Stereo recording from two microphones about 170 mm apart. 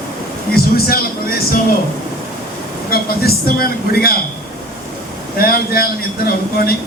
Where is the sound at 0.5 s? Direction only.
65° left (ahead or behind).